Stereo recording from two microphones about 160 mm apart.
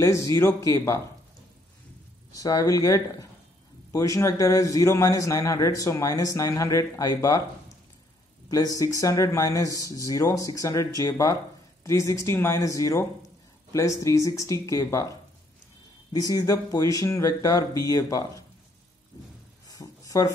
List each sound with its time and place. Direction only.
0.0 s a man's voice: 20° left (ahead or behind)
2.3 s a man's voice: 20° left (ahead or behind)
8.5 s a man's voice: 20° left (ahead or behind)
19.7 s a sound: 20° left (ahead or behind)